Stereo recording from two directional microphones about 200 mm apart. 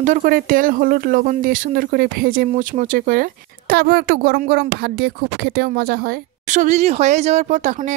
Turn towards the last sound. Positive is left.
turn(degrees=-40)  # may be behind; listen again after turning